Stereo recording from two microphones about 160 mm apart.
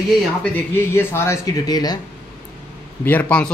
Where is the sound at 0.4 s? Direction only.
15° left (ahead or behind).